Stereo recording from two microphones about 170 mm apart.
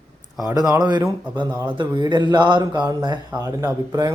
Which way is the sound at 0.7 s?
25° right (ahead or behind).